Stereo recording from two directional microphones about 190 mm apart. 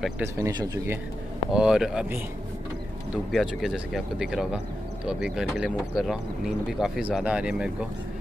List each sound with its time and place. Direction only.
0.4 s speech: 20° right (ahead or behind)
1.5 s speech: 5° right (ahead or behind)
3.3 s speech: centre (ahead or behind)